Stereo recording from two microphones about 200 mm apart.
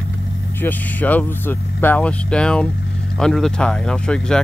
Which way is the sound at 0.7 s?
10° left (ahead or behind).